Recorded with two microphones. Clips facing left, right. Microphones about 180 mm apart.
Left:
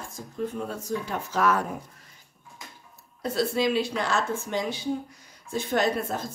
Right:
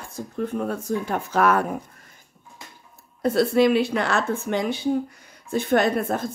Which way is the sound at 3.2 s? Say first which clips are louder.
Right 7 dB; 60° right (ahead or behind).